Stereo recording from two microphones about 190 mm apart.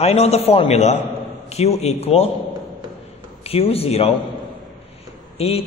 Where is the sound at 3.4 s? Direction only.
30° left (ahead or behind).